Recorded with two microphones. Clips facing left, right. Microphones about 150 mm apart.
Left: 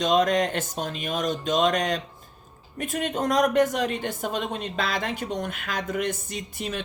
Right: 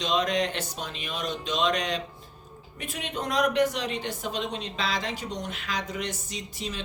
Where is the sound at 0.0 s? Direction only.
45° left (ahead or behind).